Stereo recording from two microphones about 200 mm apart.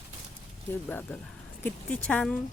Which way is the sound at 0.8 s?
10° left (ahead or behind).